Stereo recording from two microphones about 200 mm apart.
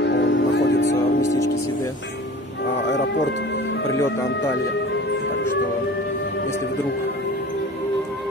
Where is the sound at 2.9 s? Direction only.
60° left (ahead or behind).